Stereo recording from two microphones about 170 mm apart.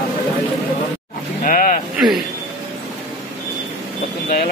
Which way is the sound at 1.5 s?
55° left (ahead or behind).